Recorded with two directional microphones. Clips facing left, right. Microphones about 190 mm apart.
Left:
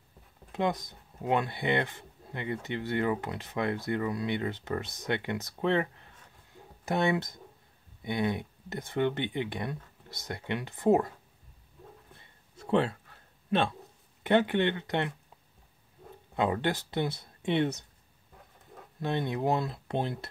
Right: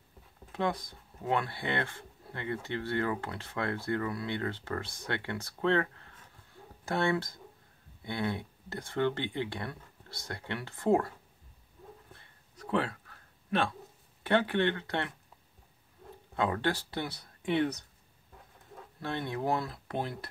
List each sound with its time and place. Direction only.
0.5 s speech: 20° left (ahead or behind)
12.1 s a sound: 20° left (ahead or behind)
13.5 s speech: 25° left (ahead or behind)
16.3 s speech: 20° left (ahead or behind)
18.9 s speech: 20° left (ahead or behind)